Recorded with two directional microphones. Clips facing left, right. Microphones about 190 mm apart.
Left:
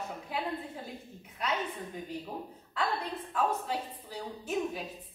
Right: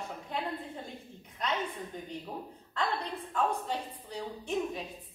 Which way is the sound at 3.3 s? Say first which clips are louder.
Even; 5° left (ahead or behind).